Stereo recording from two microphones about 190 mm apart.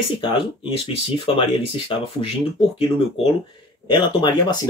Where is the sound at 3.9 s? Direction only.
25° left (ahead or behind).